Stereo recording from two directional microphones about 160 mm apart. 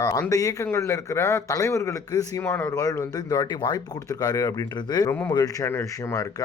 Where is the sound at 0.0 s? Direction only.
20° left (ahead or behind).